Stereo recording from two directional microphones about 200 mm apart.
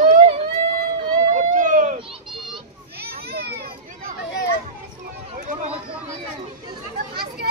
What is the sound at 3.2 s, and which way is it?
Children playing, 50° right (ahead or behind).